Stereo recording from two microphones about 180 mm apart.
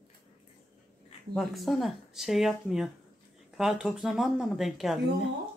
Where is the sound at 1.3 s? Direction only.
Centre (ahead or behind).